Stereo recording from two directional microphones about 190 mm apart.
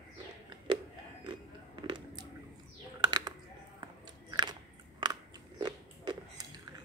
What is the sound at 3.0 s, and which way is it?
Typing, 20° right (ahead or behind).